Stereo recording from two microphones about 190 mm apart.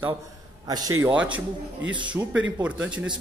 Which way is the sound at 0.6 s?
20° right (ahead or behind).